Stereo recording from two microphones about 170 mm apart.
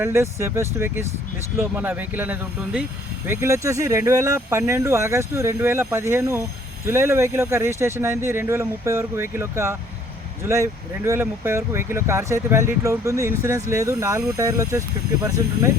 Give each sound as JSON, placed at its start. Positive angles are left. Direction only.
{"t": 0.0, "sound": "speech", "side_deg": -15}